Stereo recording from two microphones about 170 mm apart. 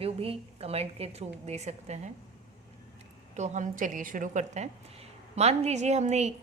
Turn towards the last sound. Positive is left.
turn(degrees=-40)  # may be behind; listen again after turning